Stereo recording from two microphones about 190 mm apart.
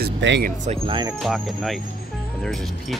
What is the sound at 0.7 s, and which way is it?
Speech, 25° right (ahead or behind).